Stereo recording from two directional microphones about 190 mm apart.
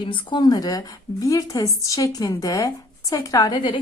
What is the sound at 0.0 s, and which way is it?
A woman's voice, 25° left (ahead or behind).